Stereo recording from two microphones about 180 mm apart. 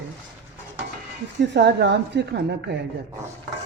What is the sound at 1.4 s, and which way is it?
A woman's voice, 70° right (ahead or behind).